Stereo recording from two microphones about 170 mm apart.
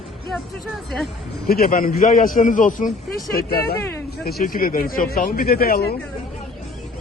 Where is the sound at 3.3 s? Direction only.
65° left (ahead or behind).